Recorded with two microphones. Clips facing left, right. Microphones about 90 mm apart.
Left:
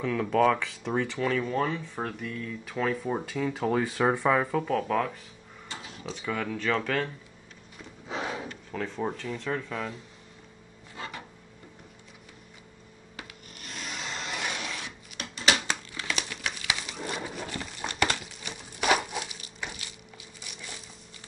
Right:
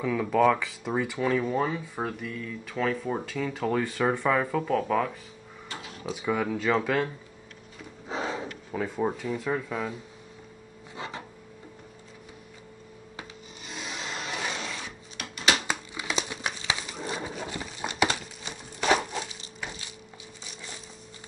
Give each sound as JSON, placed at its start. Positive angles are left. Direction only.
{"t": 0.0, "sound": "speech", "side_deg": -5}
{"t": 8.1, "sound": "snort", "side_deg": -25}
{"t": 8.7, "sound": "speech", "side_deg": -10}
{"t": 11.0, "sound": "a sound", "side_deg": -25}
{"t": 13.6, "sound": "scrape", "side_deg": 0}
{"t": 14.5, "sound": "a sound", "side_deg": -20}
{"t": 15.6, "sound": "crumpling", "side_deg": -15}
{"t": 17.0, "sound": "a sound", "side_deg": -20}
{"t": 18.8, "sound": "crushing", "side_deg": 5}